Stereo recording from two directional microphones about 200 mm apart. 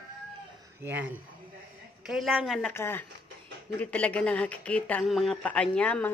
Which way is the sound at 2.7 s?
10° left (ahead or behind).